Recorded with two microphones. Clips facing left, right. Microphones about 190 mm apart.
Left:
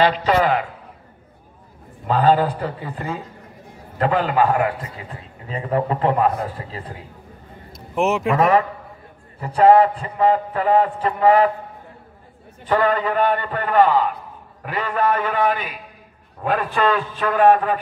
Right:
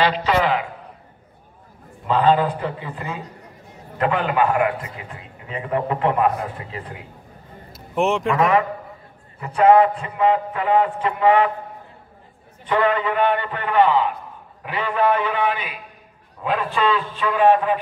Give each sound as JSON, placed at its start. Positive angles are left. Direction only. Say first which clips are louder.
{"t": 0.0, "sound": "a man's voice", "louder": "left 2 dB", "side_deg": 45}
{"t": 2.0, "sound": "a man's voice", "louder": "left 1 dB", "side_deg": 40}
{"t": 7.7, "sound": "a sound", "louder": "even", "side_deg": 0}
{"t": 8.4, "sound": "a man's voice", "louder": "left 1 dB", "side_deg": 35}
{"t": 12.6, "sound": "a man's voice", "louder": "left 1 dB", "side_deg": 40}